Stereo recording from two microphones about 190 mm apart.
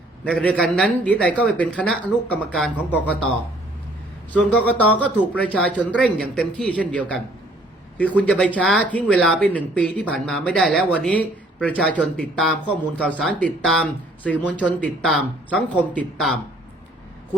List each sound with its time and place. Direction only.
0.3 s speech: 5° left (ahead or behind)
4.3 s speech: 5° left (ahead or behind)